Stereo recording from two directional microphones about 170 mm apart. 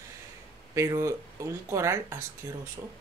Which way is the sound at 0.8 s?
15° right (ahead or behind).